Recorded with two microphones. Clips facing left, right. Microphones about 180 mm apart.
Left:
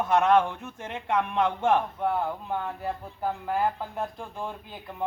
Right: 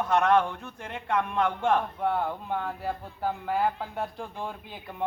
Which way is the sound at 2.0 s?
Centre (ahead or behind).